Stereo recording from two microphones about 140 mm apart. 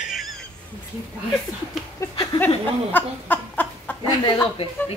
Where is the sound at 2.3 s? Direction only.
40° left (ahead or behind).